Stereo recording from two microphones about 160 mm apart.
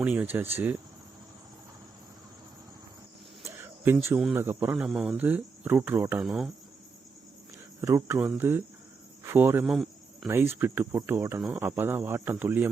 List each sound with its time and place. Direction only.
0.0 s cricket: 10° right (ahead or behind)
3.4 s a sound: 15° right (ahead or behind)
4.4 s cricket: 15° right (ahead or behind)
7.8 s cricket: 15° right (ahead or behind)
9.6 s cricket: centre (ahead or behind)
10.2 s cricket: 15° right (ahead or behind)
11.3 s cricket: 5° right (ahead or behind)